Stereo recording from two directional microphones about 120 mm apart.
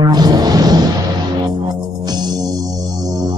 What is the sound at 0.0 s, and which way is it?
Music, 35° right (ahead or behind).